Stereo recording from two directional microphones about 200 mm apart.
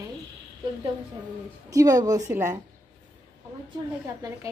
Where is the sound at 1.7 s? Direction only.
20° right (ahead or behind).